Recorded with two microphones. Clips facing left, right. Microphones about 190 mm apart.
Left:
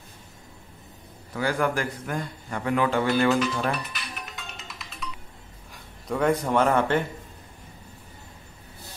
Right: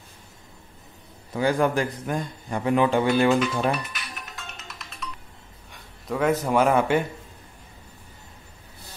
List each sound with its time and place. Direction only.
1.3 s a man's voice: 20° right (ahead or behind)
3.7 s music: centre (ahead or behind)
5.7 s speech: centre (ahead or behind)